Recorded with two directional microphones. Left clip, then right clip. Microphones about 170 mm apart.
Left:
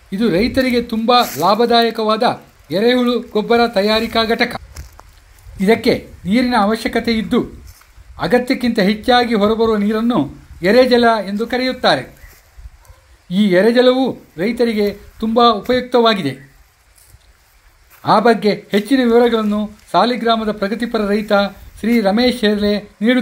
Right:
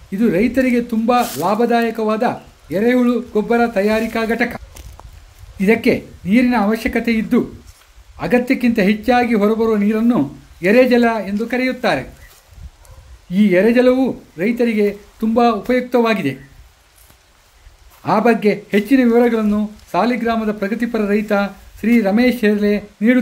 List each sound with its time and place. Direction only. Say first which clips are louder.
0.1 s speech: left 1 dB; centre (ahead or behind)
13.3 s speech: left 1 dB; centre (ahead or behind)
18.0 s speech: left 2 dB; centre (ahead or behind)